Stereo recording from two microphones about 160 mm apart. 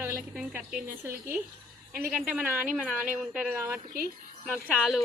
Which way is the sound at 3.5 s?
15° right (ahead or behind).